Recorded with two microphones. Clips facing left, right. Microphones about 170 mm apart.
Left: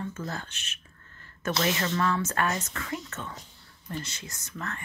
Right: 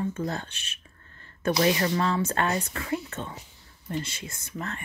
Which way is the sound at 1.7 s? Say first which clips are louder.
Right 3 dB; 15° right (ahead or behind).